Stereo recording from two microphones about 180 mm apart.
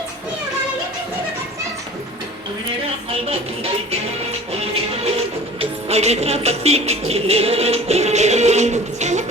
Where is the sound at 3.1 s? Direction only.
35° right (ahead or behind).